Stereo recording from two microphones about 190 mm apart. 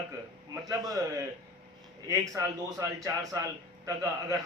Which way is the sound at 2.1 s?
15° right (ahead or behind).